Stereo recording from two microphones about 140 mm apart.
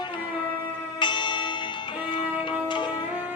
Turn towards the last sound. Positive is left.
turn(degrees=35)  # may be behind; listen again after turning